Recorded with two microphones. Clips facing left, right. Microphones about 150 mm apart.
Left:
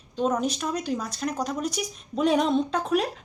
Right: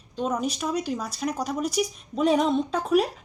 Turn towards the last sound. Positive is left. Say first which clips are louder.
# right 1 dB
turn(degrees=-5)  # may be behind; listen again after turning